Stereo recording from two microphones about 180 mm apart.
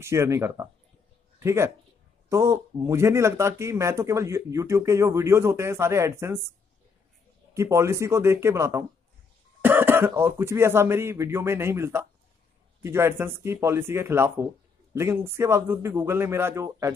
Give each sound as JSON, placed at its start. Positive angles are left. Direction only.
{"t": 0.0, "sound": "speech", "side_deg": -15}
{"t": 7.5, "sound": "speech", "side_deg": -15}